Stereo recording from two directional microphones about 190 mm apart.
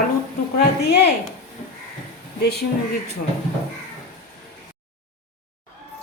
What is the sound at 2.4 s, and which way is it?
Speech, 60° left (ahead or behind).